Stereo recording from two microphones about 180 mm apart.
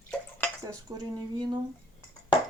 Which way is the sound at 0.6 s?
20° right (ahead or behind).